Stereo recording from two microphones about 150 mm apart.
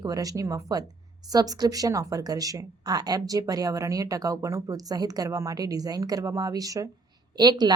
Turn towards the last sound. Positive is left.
turn(degrees=-25)  # may be behind; listen again after turning